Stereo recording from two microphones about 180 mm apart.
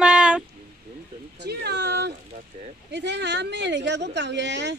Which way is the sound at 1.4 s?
65° right (ahead or behind).